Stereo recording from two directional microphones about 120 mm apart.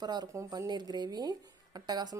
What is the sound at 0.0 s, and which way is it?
Speech, 35° right (ahead or behind).